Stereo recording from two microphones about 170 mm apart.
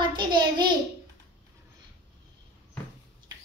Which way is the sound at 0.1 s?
25° right (ahead or behind).